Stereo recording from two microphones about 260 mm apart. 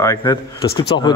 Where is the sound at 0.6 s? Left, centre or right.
Left.